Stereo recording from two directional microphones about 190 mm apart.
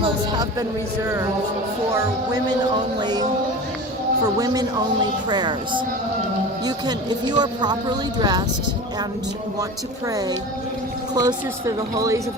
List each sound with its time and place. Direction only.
3.0 s speech: 20° right (ahead or behind)
4.4 s speech: 20° right (ahead or behind)
10.1 s a woman's voice: 20° right (ahead or behind)